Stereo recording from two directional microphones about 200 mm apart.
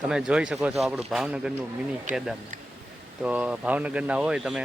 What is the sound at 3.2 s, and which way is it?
A man's voice, 5° right (ahead or behind).